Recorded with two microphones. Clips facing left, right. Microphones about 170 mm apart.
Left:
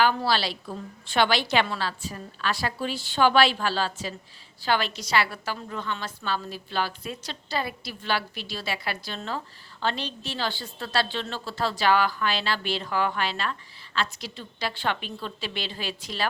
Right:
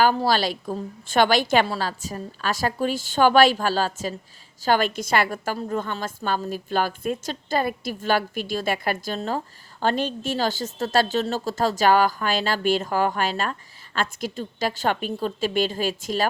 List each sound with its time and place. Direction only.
0.0 s a woman's voice: 40° right (ahead or behind)